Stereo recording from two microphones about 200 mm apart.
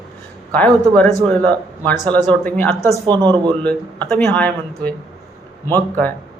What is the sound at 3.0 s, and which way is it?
Speech, 20° right (ahead or behind).